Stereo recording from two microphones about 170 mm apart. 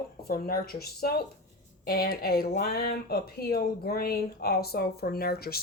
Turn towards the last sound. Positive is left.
turn(degrees=65)  # may be behind; listen again after turning